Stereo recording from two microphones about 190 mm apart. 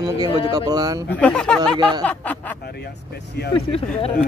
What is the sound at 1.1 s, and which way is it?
Speech, 10° left (ahead or behind).